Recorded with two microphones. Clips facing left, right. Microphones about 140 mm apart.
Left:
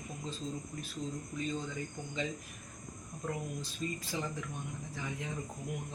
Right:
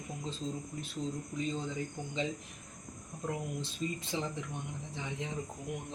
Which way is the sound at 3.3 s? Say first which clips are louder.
Right 1 dB; 20° right (ahead or behind).